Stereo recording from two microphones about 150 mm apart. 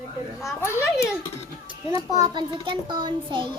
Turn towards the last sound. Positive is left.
turn(degrees=-35)  # may be behind; listen again after turning